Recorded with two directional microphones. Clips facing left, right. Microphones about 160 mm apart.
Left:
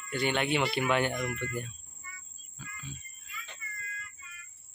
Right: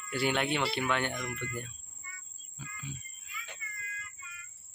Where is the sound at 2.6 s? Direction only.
15° right (ahead or behind).